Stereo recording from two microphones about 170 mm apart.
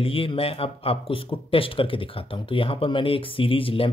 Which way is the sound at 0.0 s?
30° left (ahead or behind).